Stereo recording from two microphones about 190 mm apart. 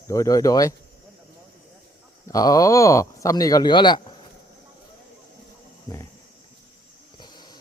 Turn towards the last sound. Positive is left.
turn(degrees=20)  # may be behind; listen again after turning